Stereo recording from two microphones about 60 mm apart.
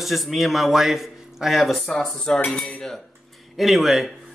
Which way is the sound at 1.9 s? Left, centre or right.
Centre.